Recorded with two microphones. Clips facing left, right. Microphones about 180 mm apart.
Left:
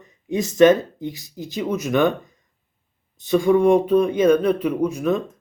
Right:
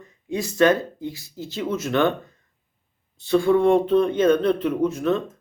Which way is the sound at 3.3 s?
15° left (ahead or behind).